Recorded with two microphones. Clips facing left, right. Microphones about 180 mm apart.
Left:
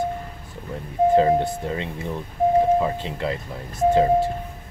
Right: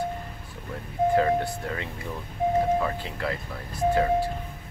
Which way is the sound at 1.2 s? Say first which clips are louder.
Left 5 dB; 20° left (ahead or behind).